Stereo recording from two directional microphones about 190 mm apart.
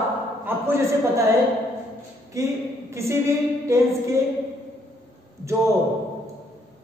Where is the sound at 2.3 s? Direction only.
15° right (ahead or behind).